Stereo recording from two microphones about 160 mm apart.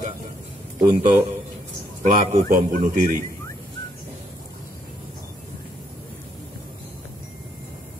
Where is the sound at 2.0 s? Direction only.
55° right (ahead or behind).